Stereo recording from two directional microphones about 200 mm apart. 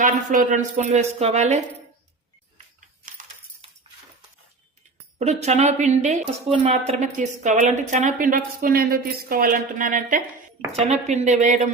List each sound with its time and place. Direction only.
0.0 s a woman's voice: 40° right (ahead or behind)
5.2 s a woman's voice: 35° right (ahead or behind)